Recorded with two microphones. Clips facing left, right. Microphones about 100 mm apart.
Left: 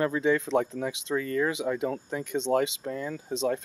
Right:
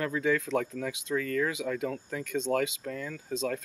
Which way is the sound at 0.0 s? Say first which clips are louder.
Left 3 dB; 25° left (ahead or behind).